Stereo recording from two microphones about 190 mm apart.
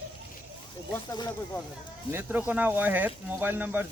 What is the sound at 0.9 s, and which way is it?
Speech, 20° left (ahead or behind).